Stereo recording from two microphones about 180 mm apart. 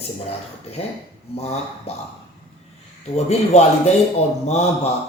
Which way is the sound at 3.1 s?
35° left (ahead or behind).